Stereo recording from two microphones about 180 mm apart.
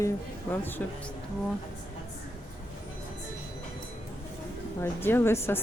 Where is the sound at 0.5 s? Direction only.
10° left (ahead or behind).